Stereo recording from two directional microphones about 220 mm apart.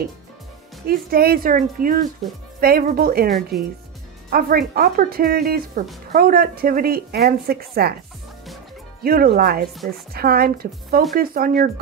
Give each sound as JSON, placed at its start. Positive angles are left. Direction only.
{"t": 0.8, "sound": "a woman's voice", "side_deg": -40}
{"t": 9.0, "sound": "a woman's voice", "side_deg": -40}